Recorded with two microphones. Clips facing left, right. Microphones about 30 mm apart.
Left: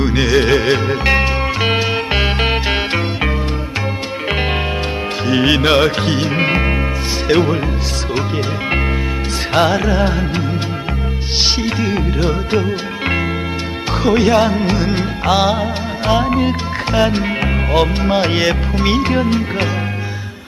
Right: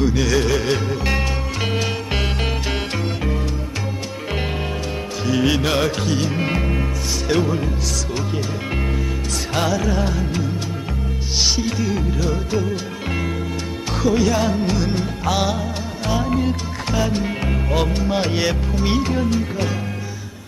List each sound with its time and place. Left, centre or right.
0.0 s music: left
5.2 s music: left
9.5 s music: left
11.4 s music: left
14.0 s music: left
16.1 s speech: left
18.1 s music: left